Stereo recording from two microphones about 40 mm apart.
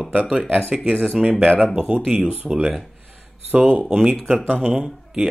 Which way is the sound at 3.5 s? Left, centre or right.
Right.